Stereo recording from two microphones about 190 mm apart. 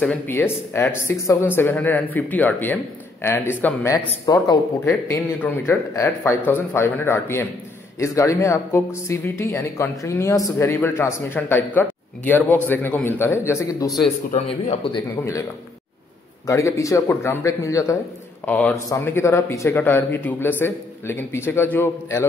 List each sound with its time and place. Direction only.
0.0 s speech: 10° left (ahead or behind)
13.8 s speech: centre (ahead or behind)
14.3 s speech: 30° left (ahead or behind)
16.4 s speech: 15° left (ahead or behind)